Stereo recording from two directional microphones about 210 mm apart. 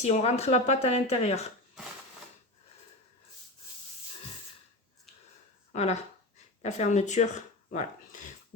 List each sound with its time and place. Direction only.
0.0 s speech: 30° left (ahead or behind)
5.7 s speech: 30° left (ahead or behind)